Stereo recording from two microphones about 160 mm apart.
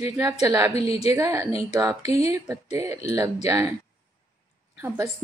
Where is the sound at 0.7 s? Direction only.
40° left (ahead or behind).